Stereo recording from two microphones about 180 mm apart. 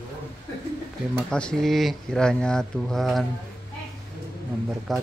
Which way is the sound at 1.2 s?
5° left (ahead or behind).